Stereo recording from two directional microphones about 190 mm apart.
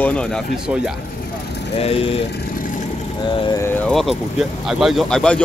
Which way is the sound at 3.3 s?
20° left (ahead or behind).